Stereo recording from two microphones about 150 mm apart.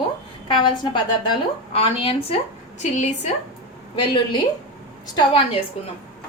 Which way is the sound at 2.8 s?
55° left (ahead or behind).